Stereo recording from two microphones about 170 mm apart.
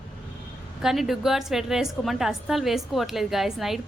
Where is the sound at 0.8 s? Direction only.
Centre (ahead or behind).